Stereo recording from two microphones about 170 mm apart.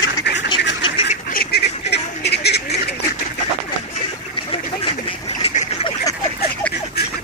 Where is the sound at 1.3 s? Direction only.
65° left (ahead or behind).